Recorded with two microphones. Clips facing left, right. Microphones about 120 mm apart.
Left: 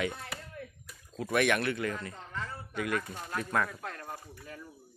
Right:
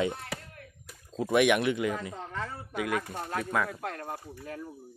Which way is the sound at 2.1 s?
90° right.